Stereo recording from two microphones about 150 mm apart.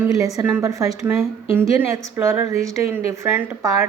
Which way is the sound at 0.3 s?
15° right (ahead or behind).